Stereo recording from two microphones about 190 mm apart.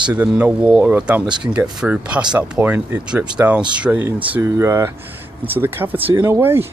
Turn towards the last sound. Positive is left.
turn(degrees=-15)  # may be behind; listen again after turning